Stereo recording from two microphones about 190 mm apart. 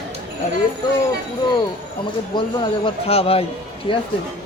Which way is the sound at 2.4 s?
25° left (ahead or behind).